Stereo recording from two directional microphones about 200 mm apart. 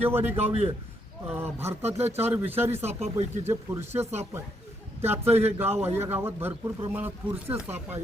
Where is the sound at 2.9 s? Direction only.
30° right (ahead or behind).